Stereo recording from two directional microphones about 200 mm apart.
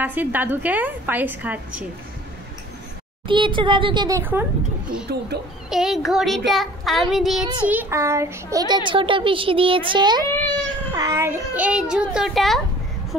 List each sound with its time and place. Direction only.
0.0 s a woman's voice: 10° right (ahead or behind)
3.3 s a child's voice: 25° right (ahead or behind)
4.2 s a woman's voice: 10° right (ahead or behind)
5.1 s speech: 50° right (ahead or behind)
5.7 s a child's voice: centre (ahead or behind)
7.6 s a child's voice: 10° right (ahead or behind)